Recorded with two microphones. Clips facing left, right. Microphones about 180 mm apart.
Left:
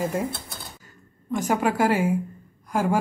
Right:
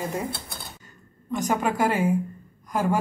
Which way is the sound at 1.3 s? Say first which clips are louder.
Left 2 dB; 10° left (ahead or behind).